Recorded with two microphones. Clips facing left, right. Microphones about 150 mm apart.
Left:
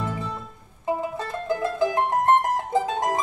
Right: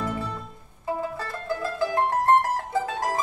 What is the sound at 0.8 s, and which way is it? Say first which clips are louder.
Music: left 3 dB; 20° left (ahead or behind).